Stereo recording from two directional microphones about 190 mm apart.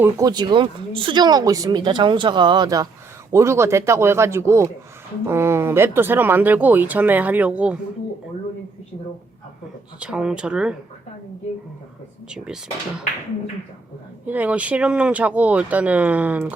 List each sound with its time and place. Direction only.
0.0 s speech: 20° right (ahead or behind)
10.0 s speech: 5° right (ahead or behind)
14.3 s speech: 10° right (ahead or behind)